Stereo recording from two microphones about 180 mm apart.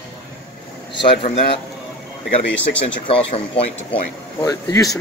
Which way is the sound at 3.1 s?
30° left (ahead or behind).